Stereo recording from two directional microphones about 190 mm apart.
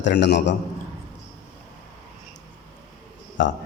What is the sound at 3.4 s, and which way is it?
Speech, 70° left (ahead or behind).